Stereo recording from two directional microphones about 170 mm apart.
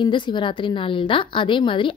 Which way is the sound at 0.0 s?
25° left (ahead or behind).